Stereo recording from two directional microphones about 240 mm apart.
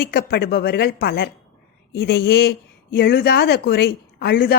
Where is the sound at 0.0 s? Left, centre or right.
Left.